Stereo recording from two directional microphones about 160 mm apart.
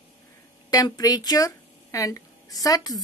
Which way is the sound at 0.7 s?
25° left (ahead or behind).